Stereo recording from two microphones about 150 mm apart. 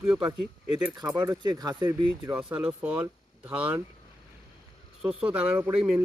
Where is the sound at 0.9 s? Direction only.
25° right (ahead or behind).